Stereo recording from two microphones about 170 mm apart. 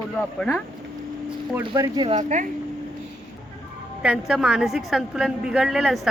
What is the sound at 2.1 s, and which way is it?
Speech, 45° right (ahead or behind).